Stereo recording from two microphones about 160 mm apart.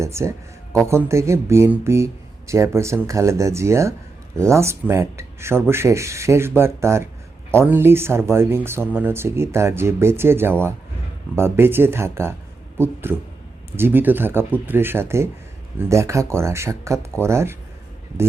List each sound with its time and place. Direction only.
0.0 s speech: 15° right (ahead or behind)